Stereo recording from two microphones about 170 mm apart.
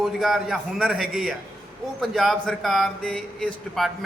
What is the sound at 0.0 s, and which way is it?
Speech, centre (ahead or behind).